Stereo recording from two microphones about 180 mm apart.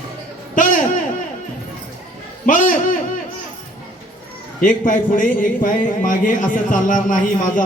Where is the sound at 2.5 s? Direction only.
50° left (ahead or behind).